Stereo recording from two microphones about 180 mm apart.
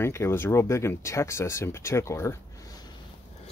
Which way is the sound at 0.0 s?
15° left (ahead or behind).